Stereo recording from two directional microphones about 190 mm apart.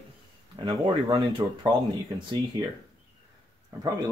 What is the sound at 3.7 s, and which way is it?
Speech, 15° right (ahead or behind).